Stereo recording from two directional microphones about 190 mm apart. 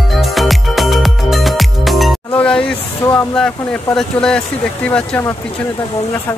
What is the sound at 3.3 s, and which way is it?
Speech, 5° left (ahead or behind).